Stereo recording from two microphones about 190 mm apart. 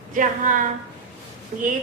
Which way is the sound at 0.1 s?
45° right (ahead or behind).